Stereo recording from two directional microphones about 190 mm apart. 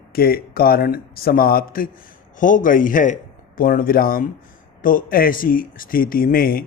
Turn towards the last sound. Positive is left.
turn(degrees=50)  # may be behind; listen again after turning